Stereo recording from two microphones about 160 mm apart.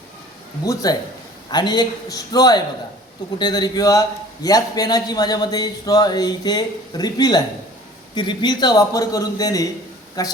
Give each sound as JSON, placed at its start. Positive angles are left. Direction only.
{"t": 0.6, "sound": "a man's voice", "side_deg": 20}